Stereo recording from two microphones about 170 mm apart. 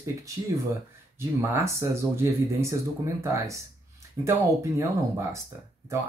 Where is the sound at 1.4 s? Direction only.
15° right (ahead or behind).